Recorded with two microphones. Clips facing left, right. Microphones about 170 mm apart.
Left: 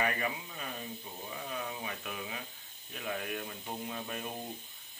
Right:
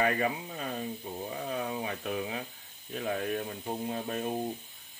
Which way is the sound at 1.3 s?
40° right (ahead or behind).